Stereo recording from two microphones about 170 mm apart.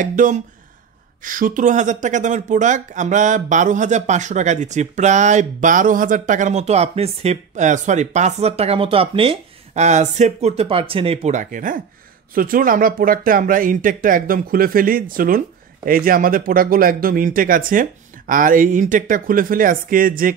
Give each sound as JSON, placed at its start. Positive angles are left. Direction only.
{"t": 0.0, "sound": "speech", "side_deg": -50}